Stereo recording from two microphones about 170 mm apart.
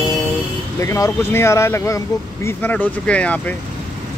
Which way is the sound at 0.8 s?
15° left (ahead or behind).